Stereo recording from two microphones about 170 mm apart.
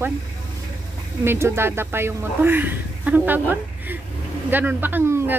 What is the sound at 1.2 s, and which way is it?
A woman's voice, 15° right (ahead or behind).